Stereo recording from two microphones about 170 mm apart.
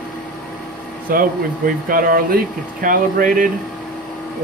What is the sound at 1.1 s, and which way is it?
Speech, 55° right (ahead or behind).